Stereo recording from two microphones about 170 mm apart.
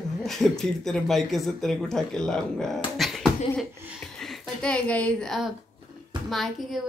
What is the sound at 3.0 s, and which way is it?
Beatboxing, centre (ahead or behind).